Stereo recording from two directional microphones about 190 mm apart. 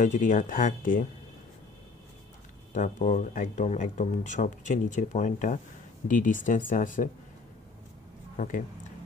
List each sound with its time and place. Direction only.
0.0 s speech: 40° left (ahead or behind)
2.7 s speech: 40° left (ahead or behind)
8.4 s speech: 45° left (ahead or behind)